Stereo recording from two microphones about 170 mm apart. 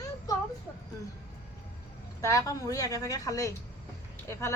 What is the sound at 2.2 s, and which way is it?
A woman's voice, 20° left (ahead or behind).